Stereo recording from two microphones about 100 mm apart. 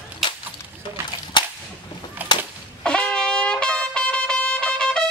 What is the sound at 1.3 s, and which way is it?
Cap gun, 55° left (ahead or behind).